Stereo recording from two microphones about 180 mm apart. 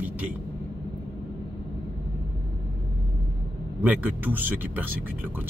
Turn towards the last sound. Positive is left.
turn(degrees=-10)  # may be behind; listen again after turning